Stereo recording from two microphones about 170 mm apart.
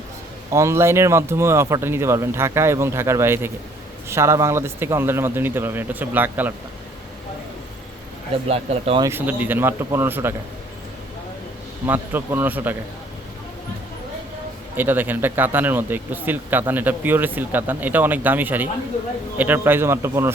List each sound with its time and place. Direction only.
0.5 s speech: 15° right (ahead or behind)
8.4 s speech: 35° right (ahead or behind)
9.0 s speech: 15° right (ahead or behind)
11.9 s speech: 10° right (ahead or behind)
14.8 s speech: 10° right (ahead or behind)